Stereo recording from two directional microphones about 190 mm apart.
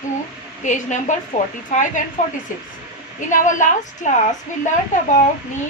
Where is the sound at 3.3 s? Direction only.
40° left (ahead or behind).